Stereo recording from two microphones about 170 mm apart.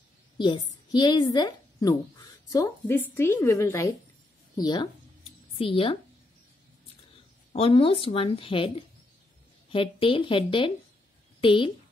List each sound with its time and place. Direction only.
0.4 s a woman's voice: 25° left (ahead or behind)
7.5 s a woman's voice: 35° left (ahead or behind)